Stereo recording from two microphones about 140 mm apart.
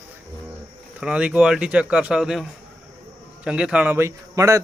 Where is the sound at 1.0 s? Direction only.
5° right (ahead or behind).